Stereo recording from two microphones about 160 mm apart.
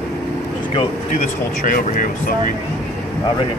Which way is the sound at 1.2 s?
60° left (ahead or behind).